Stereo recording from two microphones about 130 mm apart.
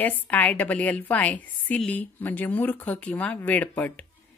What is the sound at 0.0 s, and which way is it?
A woman's voice, 10° left (ahead or behind).